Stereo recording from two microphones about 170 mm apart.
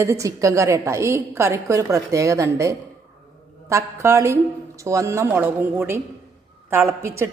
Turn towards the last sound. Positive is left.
turn(degrees=-15)  # may be behind; listen again after turning